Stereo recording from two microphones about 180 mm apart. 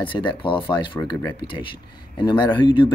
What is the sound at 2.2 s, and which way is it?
Speech, 25° left (ahead or behind).